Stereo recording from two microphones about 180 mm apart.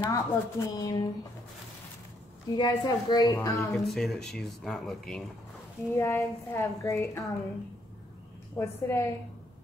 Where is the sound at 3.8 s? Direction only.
Centre (ahead or behind).